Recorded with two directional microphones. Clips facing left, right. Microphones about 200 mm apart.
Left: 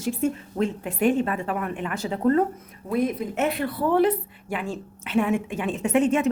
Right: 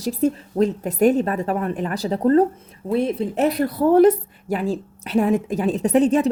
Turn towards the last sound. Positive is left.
turn(degrees=-35)  # may be behind; listen again after turning